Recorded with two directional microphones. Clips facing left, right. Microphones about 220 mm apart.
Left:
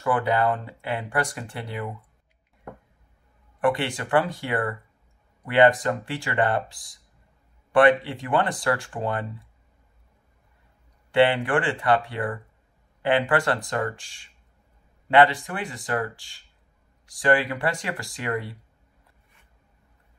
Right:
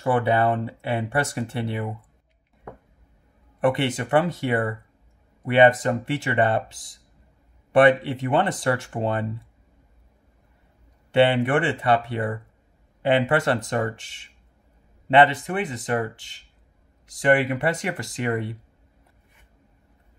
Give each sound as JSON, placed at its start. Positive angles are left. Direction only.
{"t": 0.0, "sound": "speech", "side_deg": -25}
{"t": 3.6, "sound": "speech", "side_deg": -25}
{"t": 8.0, "sound": "speech", "side_deg": -25}
{"t": 11.1, "sound": "speech", "side_deg": -25}